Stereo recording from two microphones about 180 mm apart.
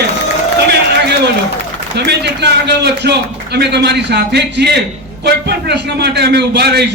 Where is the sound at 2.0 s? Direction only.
65° right (ahead or behind).